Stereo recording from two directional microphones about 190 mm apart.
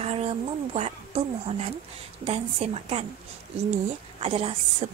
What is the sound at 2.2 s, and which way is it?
Speech, 35° right (ahead or behind).